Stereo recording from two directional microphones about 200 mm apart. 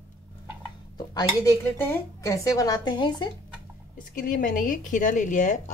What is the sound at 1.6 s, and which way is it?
Speech, 15° left (ahead or behind).